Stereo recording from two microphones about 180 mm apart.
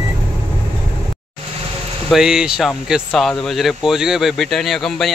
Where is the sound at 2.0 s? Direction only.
5° right (ahead or behind).